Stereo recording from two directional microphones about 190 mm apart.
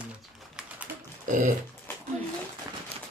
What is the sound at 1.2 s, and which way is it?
Dog, 45° right (ahead or behind).